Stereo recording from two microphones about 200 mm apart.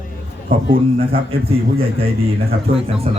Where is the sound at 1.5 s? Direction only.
30° right (ahead or behind).